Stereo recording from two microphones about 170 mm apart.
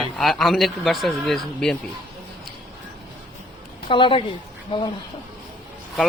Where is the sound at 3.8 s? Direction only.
30° left (ahead or behind).